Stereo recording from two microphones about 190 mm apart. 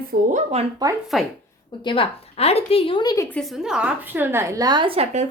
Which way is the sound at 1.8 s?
25° left (ahead or behind).